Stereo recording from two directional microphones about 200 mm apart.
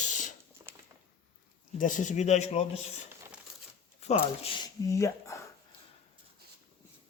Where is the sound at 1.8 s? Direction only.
40° left (ahead or behind).